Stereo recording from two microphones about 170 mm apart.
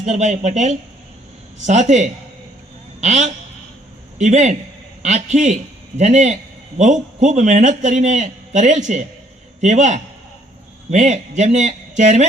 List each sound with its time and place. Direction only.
0.0 s a man's voice: 45° right (ahead or behind)